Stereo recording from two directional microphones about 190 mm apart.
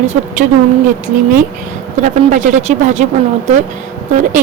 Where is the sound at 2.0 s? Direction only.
40° right (ahead or behind).